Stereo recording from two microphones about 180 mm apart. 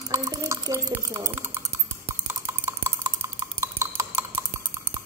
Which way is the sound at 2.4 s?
15° right (ahead or behind).